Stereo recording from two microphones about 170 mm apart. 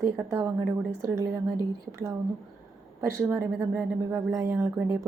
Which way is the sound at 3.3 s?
15° right (ahead or behind).